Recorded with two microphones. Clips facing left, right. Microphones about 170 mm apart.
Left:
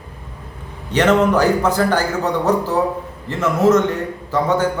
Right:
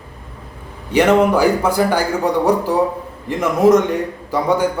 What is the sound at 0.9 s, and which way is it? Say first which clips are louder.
Speech: right 2 dB; 10° right (ahead or behind).